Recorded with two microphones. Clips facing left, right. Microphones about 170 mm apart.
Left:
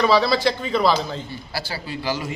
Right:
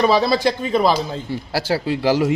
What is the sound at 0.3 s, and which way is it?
Speech, 50° right (ahead or behind).